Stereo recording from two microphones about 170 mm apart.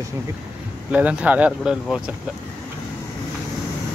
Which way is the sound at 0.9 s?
10° right (ahead or behind).